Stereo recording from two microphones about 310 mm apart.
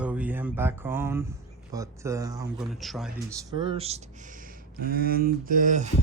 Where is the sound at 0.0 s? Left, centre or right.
Centre.